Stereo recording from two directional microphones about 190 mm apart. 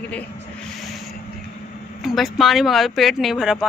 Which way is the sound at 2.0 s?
Centre (ahead or behind).